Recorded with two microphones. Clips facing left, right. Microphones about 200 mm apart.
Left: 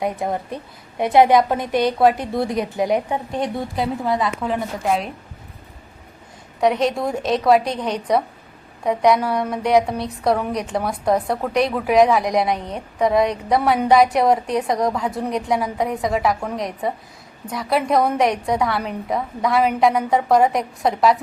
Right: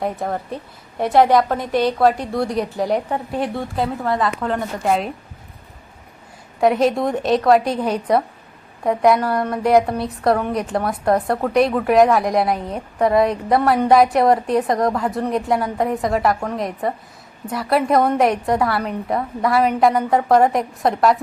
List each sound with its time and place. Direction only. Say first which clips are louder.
0.0 s a woman's voice: even; 15° left (ahead or behind)
4.0 s a woman's voice: right 1 dB; centre (ahead or behind)
6.6 s a woman's voice: right 2 dB; centre (ahead or behind)